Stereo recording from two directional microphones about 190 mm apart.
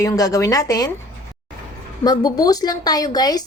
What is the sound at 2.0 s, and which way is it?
Speech, 20° left (ahead or behind).